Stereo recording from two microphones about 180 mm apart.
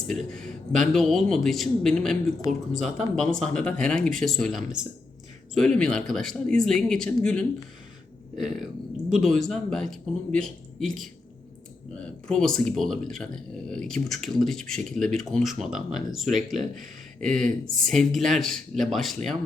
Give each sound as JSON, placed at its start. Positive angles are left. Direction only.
{"t": 0.3, "sound": "speech", "side_deg": 5}
{"t": 8.5, "sound": "speech", "side_deg": 0}
{"t": 12.3, "sound": "speech", "side_deg": 5}
{"t": 16.6, "sound": "speech", "side_deg": -45}
{"t": 17.2, "sound": "speech", "side_deg": 5}
{"t": 17.4, "sound": "speech", "side_deg": -50}
{"t": 17.8, "sound": "speech", "side_deg": 0}